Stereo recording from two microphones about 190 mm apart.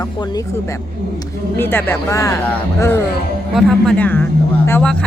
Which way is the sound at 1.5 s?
10° left (ahead or behind).